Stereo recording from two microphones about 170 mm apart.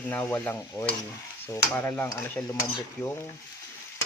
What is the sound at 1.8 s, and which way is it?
Stir, 10° left (ahead or behind).